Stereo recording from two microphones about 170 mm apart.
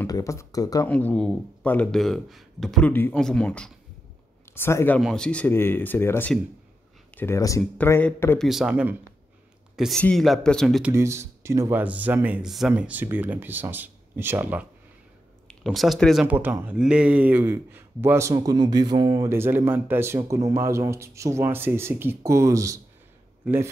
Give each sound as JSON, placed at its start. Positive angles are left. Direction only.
{"t": 0.0, "sound": "speech", "side_deg": 20}
{"t": 0.8, "sound": "speech", "side_deg": 10}
{"t": 8.4, "sound": "speech", "side_deg": 0}
{"t": 10.8, "sound": "speech", "side_deg": -15}
{"t": 15.4, "sound": "a man's voice", "side_deg": 0}